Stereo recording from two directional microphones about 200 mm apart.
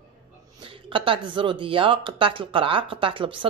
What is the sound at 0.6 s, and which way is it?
Speech, 25° right (ahead or behind).